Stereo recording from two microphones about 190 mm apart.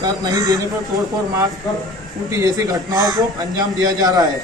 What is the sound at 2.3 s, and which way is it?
A man's voice, 15° right (ahead or behind).